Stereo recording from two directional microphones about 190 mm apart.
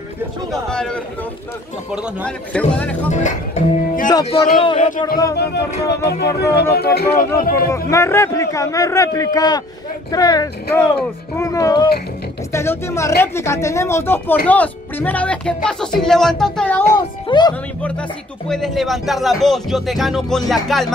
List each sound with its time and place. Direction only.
0.5 s speech: 5° left (ahead or behind)
3.1 s speech: 40° left (ahead or behind)
4.1 s speech: 20° left (ahead or behind)
5.4 s speech: 60° left (ahead or behind)
7.9 s speech: 15° left (ahead or behind)
17.3 s speech: 20° left (ahead or behind)
18.5 s speech: centre (ahead or behind)